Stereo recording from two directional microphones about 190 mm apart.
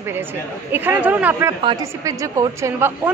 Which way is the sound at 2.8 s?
10° right (ahead or behind).